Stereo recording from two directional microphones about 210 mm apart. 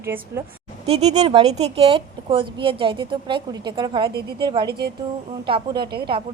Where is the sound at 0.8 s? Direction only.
30° right (ahead or behind).